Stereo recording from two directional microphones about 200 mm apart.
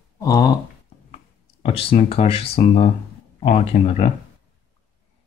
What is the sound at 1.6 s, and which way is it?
Speech, 30° left (ahead or behind).